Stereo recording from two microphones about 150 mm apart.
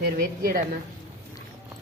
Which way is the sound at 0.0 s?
80° right.